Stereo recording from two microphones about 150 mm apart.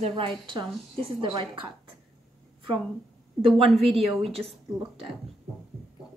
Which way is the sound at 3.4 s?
40° right (ahead or behind).